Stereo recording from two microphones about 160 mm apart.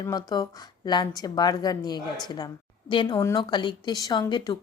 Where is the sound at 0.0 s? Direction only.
25° left (ahead or behind).